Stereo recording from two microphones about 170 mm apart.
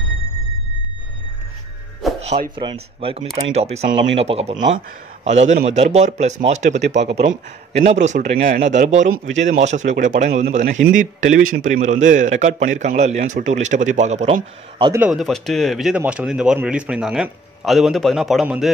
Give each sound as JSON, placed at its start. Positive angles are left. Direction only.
{"t": 2.1, "sound": "music", "side_deg": -40}
{"t": 2.5, "sound": "a man's voice", "side_deg": -30}
{"t": 7.0, "sound": "speech", "side_deg": -90}
{"t": 7.2, "sound": "a man's voice", "side_deg": -40}
{"t": 9.3, "sound": "speech", "side_deg": -90}
{"t": 9.6, "sound": "a man's voice", "side_deg": -45}
{"t": 15.0, "sound": "a man's voice", "side_deg": 0}